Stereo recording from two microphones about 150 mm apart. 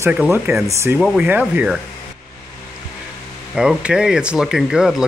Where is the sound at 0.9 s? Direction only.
5° right (ahead or behind).